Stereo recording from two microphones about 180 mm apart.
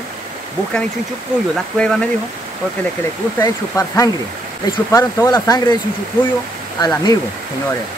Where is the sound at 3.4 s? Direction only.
15° left (ahead or behind).